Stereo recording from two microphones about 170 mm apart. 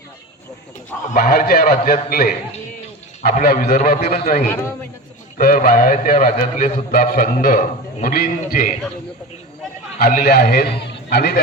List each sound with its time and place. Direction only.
1.1 s a man's voice: 55° left (ahead or behind)
3.4 s a man's voice: 60° left (ahead or behind)
4.4 s a man's voice: 15° left (ahead or behind)
5.4 s a man's voice: 55° left (ahead or behind)
10.0 s a man's voice: 60° left (ahead or behind)